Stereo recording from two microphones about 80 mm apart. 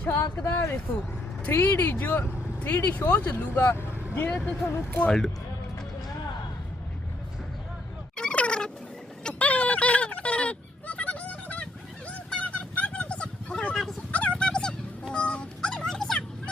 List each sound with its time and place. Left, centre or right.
0.1 s speech: left
1.5 s speech: left
5.0 s speech: centre
8.1 s a sound: centre
9.2 s fowl: centre
12.0 s a sound: centre
14.1 s dog: centre